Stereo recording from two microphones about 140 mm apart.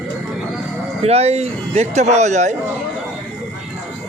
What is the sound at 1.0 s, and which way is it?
A man's voice, 45° right (ahead or behind).